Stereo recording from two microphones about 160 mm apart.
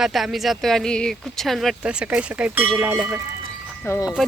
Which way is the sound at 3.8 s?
15° left (ahead or behind).